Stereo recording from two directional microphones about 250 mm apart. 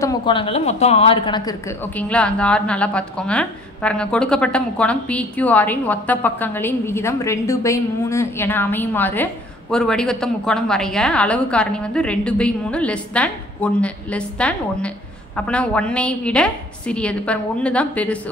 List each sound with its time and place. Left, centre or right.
0.0 s speech: centre
2.0 s a woman's voice: centre